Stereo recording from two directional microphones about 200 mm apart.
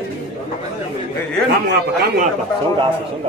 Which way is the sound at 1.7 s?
50° right (ahead or behind).